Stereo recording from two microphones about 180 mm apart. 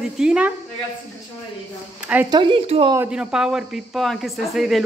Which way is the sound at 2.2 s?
25° right (ahead or behind).